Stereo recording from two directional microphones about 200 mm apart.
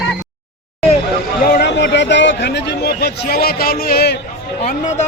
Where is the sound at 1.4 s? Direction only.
55° left (ahead or behind).